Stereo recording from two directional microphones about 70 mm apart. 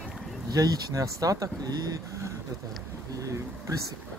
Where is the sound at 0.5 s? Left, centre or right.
Right.